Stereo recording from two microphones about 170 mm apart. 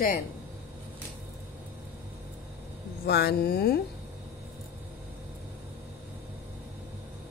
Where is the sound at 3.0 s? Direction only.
70° left (ahead or behind).